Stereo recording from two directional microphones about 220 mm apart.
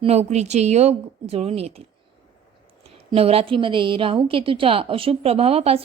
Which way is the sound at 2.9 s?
25° right (ahead or behind).